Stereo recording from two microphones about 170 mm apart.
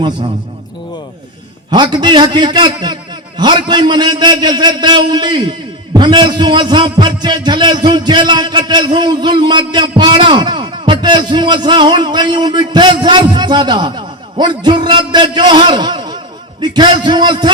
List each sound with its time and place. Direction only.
1.7 s a man's voice: 25° right (ahead or behind)